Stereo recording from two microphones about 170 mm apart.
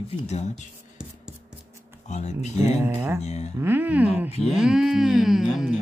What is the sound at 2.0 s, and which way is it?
Speech, 45° left (ahead or behind).